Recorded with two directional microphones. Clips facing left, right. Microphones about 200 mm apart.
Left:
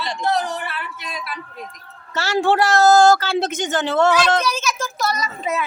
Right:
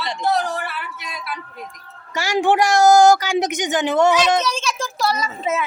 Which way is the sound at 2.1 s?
15° right (ahead or behind).